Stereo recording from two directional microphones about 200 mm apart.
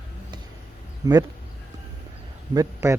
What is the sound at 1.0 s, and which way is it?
Speech, 20° right (ahead or behind).